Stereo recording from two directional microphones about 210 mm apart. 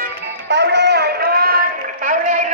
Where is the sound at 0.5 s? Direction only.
55° right (ahead or behind).